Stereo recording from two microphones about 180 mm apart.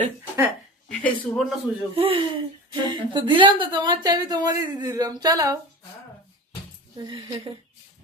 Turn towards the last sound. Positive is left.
turn(degrees=-25)  # may be behind; listen again after turning